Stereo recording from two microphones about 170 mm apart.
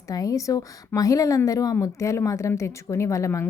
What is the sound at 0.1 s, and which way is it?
A woman's voice, 20° left (ahead or behind).